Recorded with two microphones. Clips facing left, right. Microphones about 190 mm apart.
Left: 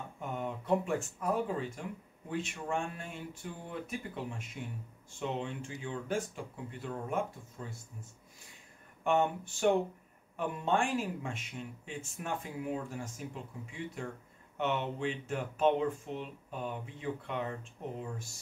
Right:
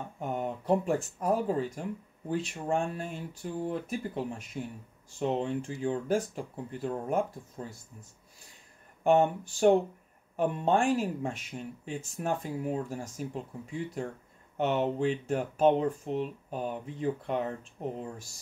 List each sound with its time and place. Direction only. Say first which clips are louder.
0.2 s speech: right 5 dB; 40° right (ahead or behind)
9.0 s speech: right 6 dB; 35° right (ahead or behind)